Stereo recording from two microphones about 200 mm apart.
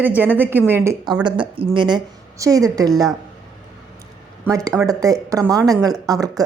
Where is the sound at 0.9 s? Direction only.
20° right (ahead or behind).